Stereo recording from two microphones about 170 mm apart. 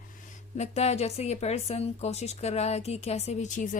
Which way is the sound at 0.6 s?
40° left (ahead or behind).